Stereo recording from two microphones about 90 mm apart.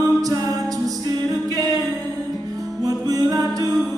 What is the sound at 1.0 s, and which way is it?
A capella, 45° right (ahead or behind).